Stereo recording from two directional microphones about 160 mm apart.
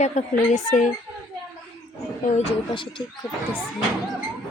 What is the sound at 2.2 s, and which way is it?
Speech, 45° left (ahead or behind).